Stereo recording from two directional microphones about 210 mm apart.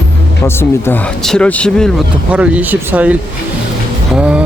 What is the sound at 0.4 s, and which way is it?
Speech, 10° left (ahead or behind).